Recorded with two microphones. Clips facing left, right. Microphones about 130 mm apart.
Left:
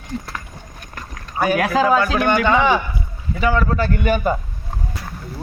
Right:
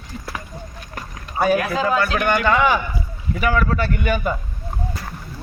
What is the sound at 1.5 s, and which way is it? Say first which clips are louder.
Speech: left 3 dB; 90° left.